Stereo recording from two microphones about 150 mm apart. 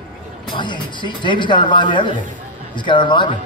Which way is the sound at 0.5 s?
30° left (ahead or behind).